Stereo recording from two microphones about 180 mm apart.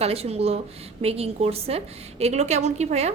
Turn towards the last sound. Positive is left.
turn(degrees=-40)  # may be behind; listen again after turning